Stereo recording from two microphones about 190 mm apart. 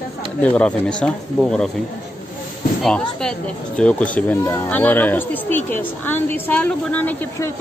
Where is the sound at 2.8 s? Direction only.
5° left (ahead or behind).